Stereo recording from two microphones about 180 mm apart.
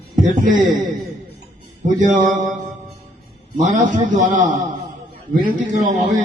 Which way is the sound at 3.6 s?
45° right (ahead or behind).